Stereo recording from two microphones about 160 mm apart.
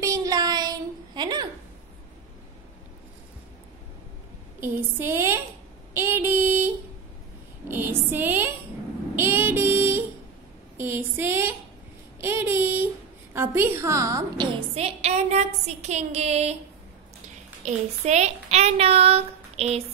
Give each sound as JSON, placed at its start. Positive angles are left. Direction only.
{"t": 0.0, "sound": "a sound", "side_deg": -20}
{"t": 4.6, "sound": "a woman's voice", "side_deg": -15}
{"t": 5.9, "sound": "a sound", "side_deg": -15}
{"t": 9.1, "sound": "child singing", "side_deg": -15}
{"t": 10.8, "sound": "a woman's voice", "side_deg": -15}
{"t": 17.6, "sound": "speech", "side_deg": -45}